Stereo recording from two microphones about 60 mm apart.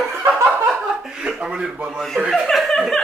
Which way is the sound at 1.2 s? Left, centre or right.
Centre.